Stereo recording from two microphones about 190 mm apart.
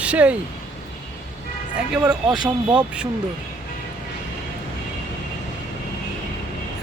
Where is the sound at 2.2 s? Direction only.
25° right (ahead or behind).